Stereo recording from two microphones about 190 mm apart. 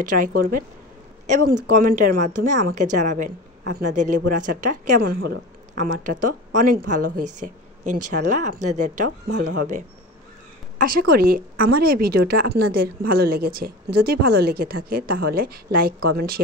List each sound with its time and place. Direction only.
0.0 s a woman's voice: 45° right (ahead or behind)
1.7 s a woman's voice: 45° right (ahead or behind)
10.8 s a woman's voice: 50° right (ahead or behind)